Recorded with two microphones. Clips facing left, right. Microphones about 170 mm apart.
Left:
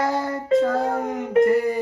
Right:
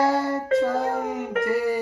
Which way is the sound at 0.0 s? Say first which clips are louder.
Right 2 dB; 5° right (ahead or behind).